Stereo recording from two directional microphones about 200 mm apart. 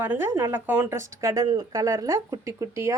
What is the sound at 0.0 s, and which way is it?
Speech, 10° right (ahead or behind).